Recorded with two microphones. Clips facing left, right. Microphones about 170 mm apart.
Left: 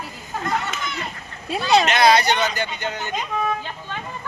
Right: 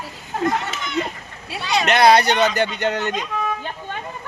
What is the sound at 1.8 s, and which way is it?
Speech, 60° right (ahead or behind).